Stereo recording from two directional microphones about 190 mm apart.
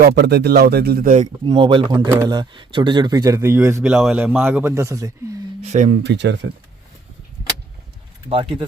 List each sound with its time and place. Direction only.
0.0 s a man's voice: 55° right (ahead or behind)
1.5 s speech: 25° right (ahead or behind)
3.9 s a man's voice: 5° right (ahead or behind)
5.7 s speech: 40° right (ahead or behind)
6.0 s a man's voice: 65° right (ahead or behind)
8.3 s speech: 25° right (ahead or behind)